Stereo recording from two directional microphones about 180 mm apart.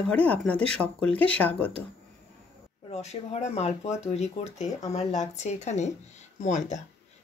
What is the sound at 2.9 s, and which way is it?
Speech, 35° left (ahead or behind).